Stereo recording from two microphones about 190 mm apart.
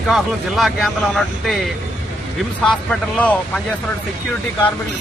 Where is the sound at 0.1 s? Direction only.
Centre (ahead or behind).